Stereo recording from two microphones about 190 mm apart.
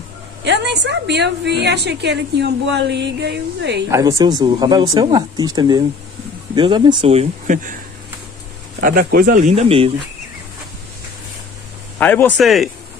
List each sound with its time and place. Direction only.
0.4 s a woman's voice: 65° right (ahead or behind)
3.9 s speech: 20° right (ahead or behind); by 7.7 s 45° right (ahead or behind)
8.8 s speech: 50° right (ahead or behind); by 9.8 s 30° right (ahead or behind)
12.0 s speech: 10° left (ahead or behind)